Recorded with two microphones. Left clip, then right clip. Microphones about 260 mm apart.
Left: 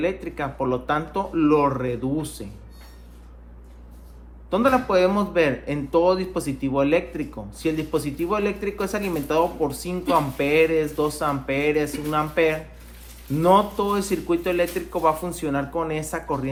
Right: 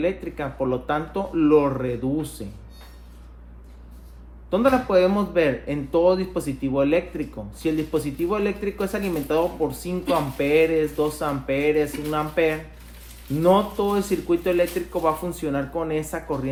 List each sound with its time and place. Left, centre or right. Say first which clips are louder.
0.0 s a man's voice: even; left
4.4 s a man's voice: even; left